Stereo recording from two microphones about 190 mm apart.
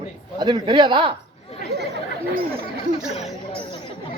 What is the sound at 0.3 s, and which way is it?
Speech, 20° right (ahead or behind).